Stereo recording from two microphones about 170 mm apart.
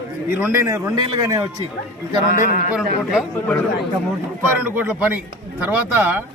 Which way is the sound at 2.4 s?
50° left (ahead or behind).